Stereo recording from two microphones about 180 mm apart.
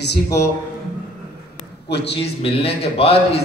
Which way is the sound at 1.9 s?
70° left (ahead or behind).